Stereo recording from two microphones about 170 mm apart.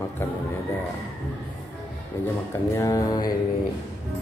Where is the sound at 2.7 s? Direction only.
20° left (ahead or behind).